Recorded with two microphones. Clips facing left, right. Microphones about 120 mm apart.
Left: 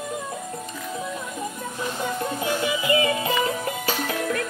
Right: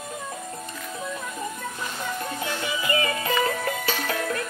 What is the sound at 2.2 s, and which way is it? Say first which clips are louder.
Music: left 5 dB; 15° left (ahead or behind).